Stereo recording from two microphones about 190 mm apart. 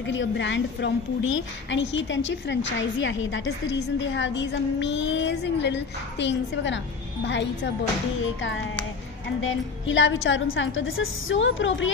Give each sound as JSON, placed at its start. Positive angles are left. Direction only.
{"t": 0.0, "sound": "a woman's voice", "side_deg": 75}